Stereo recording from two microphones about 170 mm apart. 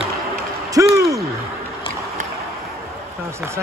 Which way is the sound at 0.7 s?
20° right (ahead or behind).